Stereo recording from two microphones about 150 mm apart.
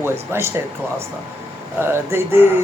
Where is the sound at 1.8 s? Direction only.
15° right (ahead or behind).